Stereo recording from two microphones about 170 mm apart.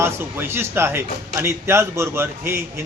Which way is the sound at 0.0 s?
15° right (ahead or behind).